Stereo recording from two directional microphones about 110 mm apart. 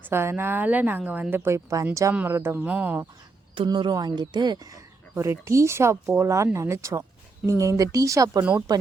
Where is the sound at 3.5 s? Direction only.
45° right (ahead or behind).